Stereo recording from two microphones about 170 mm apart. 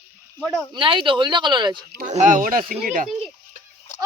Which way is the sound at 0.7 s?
30° right (ahead or behind).